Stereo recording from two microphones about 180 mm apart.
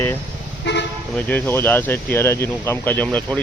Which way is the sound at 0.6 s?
75° left (ahead or behind).